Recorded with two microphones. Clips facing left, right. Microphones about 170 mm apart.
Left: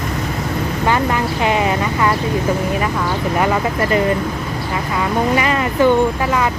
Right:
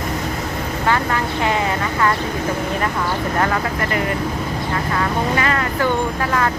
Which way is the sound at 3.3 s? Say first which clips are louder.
Left 4 dB; 15° left (ahead or behind).